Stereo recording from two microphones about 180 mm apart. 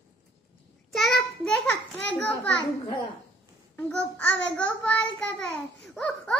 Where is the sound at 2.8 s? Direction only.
25° left (ahead or behind).